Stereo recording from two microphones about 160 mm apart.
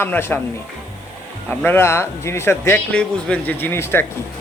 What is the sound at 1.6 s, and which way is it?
Speech, 15° left (ahead or behind).